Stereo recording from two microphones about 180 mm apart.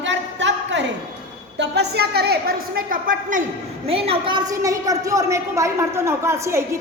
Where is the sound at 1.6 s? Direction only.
65° right (ahead or behind); by 3.5 s 45° right (ahead or behind).